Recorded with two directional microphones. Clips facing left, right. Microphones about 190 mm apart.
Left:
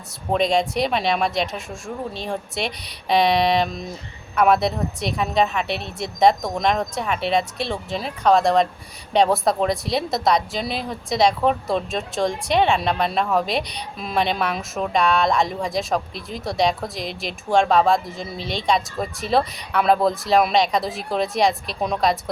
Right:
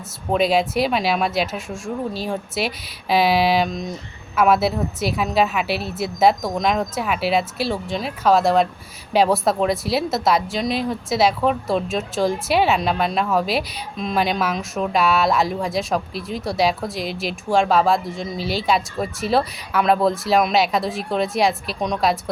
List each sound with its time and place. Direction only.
0.3 s a woman's voice: 5° right (ahead or behind)